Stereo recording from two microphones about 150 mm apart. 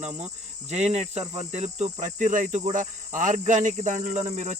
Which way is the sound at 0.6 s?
45° right (ahead or behind).